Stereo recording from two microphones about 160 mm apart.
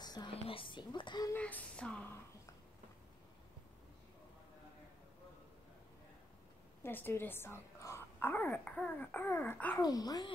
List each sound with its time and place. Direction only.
0.0 s speech: 25° left (ahead or behind)
1.3 s speech: 10° left (ahead or behind)
6.8 s speech: 15° left (ahead or behind)
9.8 s speech: 25° left (ahead or behind)